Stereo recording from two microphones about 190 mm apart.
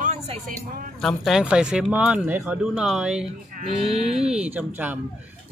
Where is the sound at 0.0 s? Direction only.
40° right (ahead or behind).